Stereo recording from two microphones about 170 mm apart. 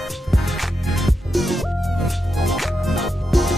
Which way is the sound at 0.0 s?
Centre (ahead or behind).